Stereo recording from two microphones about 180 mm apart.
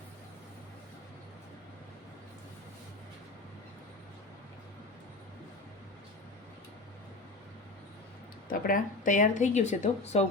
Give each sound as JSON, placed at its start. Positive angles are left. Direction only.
{"t": 8.4, "sound": "speech", "side_deg": 50}